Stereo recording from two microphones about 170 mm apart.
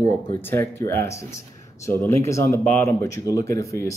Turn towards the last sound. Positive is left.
turn(degrees=20)  # may be behind; listen again after turning